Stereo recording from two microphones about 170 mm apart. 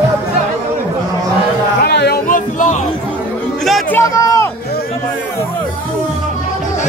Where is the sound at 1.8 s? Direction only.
75° left (ahead or behind); by 2.8 s 50° left (ahead or behind).